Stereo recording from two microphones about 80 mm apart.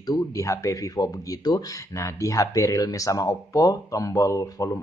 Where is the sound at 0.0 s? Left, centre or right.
Left.